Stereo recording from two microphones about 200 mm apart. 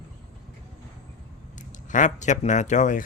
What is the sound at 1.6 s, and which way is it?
Speech, 40° left (ahead or behind).